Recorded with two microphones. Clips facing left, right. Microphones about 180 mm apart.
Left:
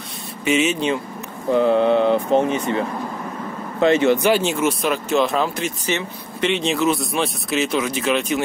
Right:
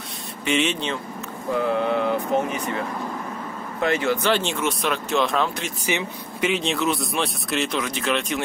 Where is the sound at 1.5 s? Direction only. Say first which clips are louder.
Left 7 dB; 25° left (ahead or behind).